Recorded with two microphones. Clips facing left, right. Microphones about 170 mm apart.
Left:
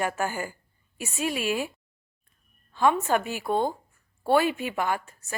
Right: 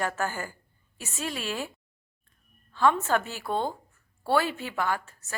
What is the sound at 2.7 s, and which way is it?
A woman's voice, 15° left (ahead or behind).